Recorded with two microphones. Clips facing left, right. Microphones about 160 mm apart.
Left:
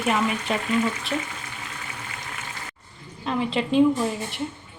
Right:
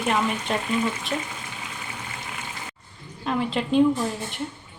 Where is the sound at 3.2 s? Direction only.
Centre (ahead or behind).